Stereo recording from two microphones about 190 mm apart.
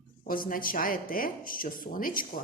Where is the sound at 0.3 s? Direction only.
50° left (ahead or behind).